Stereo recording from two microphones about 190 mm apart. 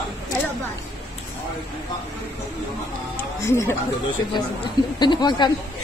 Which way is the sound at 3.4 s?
15° left (ahead or behind).